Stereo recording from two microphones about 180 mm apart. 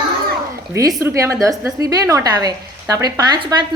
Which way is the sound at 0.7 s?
15° right (ahead or behind).